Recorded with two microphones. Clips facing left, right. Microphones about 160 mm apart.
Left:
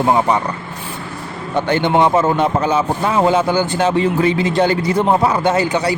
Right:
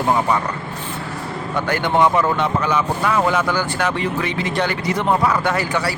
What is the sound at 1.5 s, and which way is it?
Speech, 25° left (ahead or behind).